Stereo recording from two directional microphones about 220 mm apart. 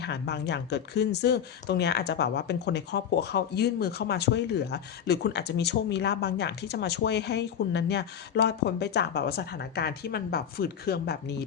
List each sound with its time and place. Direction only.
0.0 s speech: 50° left (ahead or behind)